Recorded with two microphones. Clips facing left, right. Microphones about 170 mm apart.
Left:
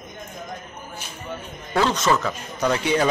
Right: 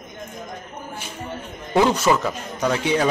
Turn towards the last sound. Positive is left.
turn(degrees=0)  # may be behind; listen again after turning